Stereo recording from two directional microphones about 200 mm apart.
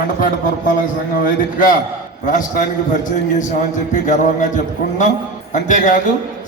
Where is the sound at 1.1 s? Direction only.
45° left (ahead or behind).